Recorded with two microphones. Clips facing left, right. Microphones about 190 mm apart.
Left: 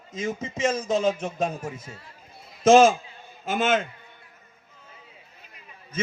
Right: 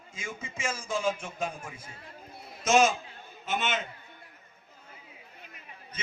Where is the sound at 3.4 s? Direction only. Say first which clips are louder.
Left 8 dB; 50° left (ahead or behind).